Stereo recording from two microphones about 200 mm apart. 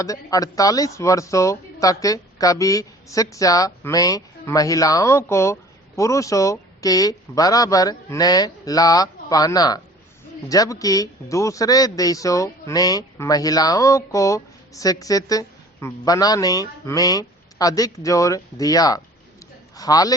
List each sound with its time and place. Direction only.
0.0 s speech: 15° left (ahead or behind)